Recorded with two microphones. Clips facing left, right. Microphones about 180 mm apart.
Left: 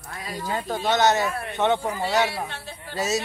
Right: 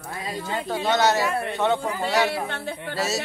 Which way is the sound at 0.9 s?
20° left (ahead or behind).